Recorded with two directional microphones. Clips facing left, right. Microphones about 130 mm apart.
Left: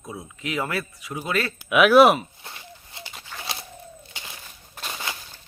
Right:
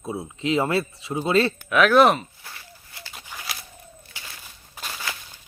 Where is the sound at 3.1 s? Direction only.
10° right (ahead or behind).